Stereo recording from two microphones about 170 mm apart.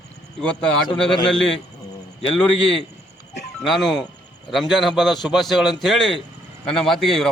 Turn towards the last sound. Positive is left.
turn(degrees=0)  # may be behind; listen again after turning